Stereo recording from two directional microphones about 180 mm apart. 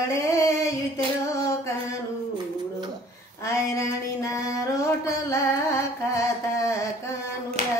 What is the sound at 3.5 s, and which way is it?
Female singing, 15° left (ahead or behind).